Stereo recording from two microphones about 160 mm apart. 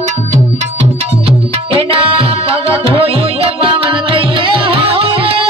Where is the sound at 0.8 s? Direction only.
35° right (ahead or behind).